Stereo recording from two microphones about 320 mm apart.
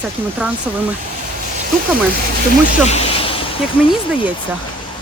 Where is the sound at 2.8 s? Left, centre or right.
Centre.